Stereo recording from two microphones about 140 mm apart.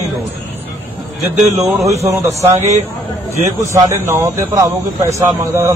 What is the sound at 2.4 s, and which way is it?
A man's voice, 15° right (ahead or behind).